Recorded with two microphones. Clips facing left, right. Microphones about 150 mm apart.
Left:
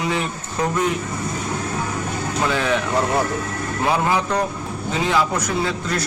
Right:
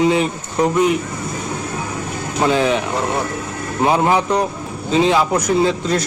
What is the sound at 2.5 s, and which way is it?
Speech, 20° right (ahead or behind).